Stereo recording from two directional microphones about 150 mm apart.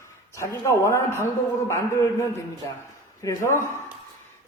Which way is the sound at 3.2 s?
20° left (ahead or behind).